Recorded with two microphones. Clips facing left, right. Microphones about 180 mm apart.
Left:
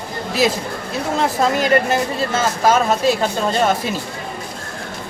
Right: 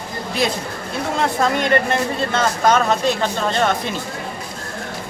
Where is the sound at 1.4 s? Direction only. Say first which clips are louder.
Left 2 dB; 5° left (ahead or behind).